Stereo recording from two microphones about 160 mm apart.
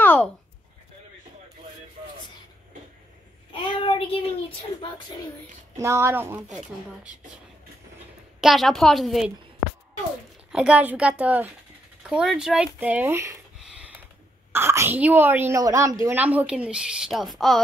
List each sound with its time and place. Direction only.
0.0 s a sound: 10° left (ahead or behind)
3.6 s child singing: 35° left (ahead or behind)
5.8 s speech: 20° right (ahead or behind)
8.4 s a woman's voice: centre (ahead or behind)
10.5 s speech: 5° right (ahead or behind)
14.5 s a woman's voice: 15° right (ahead or behind); by 17.6 s centre (ahead or behind)